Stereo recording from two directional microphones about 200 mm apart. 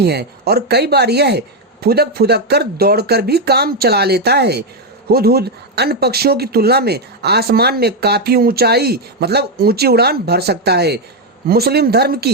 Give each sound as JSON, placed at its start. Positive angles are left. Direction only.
{"t": 0.0, "sound": "speech", "side_deg": -55}